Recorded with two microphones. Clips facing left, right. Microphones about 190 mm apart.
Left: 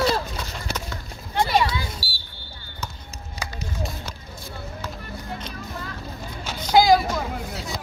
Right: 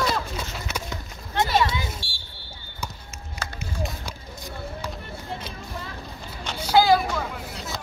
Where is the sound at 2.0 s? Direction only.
5° left (ahead or behind).